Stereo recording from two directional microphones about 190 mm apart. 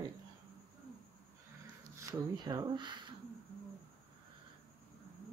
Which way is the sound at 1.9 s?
20° right (ahead or behind).